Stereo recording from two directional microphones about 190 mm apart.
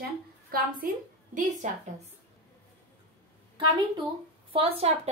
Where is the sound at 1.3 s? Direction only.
40° right (ahead or behind).